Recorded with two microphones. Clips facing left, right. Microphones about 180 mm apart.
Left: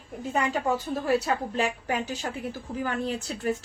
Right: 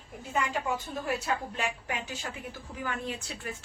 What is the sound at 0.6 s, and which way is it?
A woman's voice, 40° left (ahead or behind).